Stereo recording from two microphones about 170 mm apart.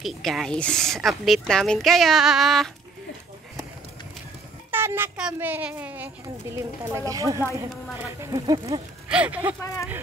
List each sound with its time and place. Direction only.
0.0 s speech: centre (ahead or behind)
4.6 s a child's voice: 15° right (ahead or behind)
9.1 s a child's voice: 10° right (ahead or behind)